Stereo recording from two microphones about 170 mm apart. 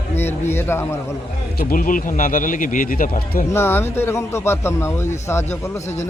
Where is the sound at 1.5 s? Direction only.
55° left (ahead or behind).